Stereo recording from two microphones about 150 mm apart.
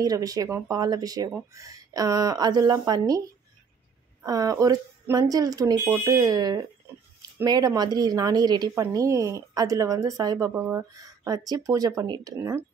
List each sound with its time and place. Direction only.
0.0 s speech: 25° right (ahead or behind)
10.5 s speech: 15° right (ahead or behind)